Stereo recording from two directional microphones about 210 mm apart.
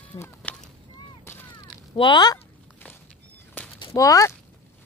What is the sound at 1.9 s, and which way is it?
Speech, 20° left (ahead or behind).